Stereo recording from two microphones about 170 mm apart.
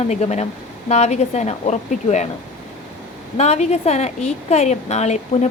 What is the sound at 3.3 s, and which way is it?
A woman's voice, 40° left (ahead or behind).